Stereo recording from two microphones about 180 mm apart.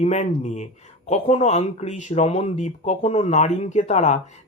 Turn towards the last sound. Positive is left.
turn(degrees=40)  # may be behind; listen again after turning